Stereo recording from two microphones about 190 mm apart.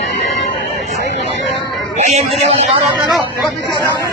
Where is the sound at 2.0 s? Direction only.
35° right (ahead or behind).